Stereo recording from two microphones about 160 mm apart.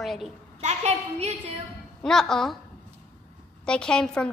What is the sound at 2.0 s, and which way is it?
Speech, 5° left (ahead or behind).